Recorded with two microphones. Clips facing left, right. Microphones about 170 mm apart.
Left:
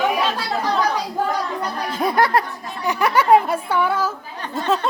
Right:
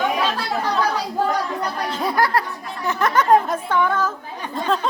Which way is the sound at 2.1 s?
20° left (ahead or behind).